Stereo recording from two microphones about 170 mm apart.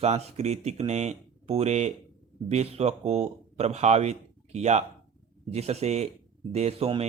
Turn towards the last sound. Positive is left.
turn(degrees=-35)  # may be behind; listen again after turning